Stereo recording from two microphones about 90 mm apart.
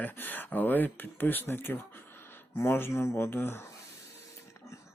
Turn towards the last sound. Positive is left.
turn(degrees=25)  # may be behind; listen again after turning